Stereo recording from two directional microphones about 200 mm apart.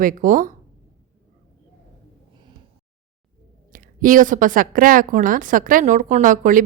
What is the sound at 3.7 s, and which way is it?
A woman's voice, 45° right (ahead or behind).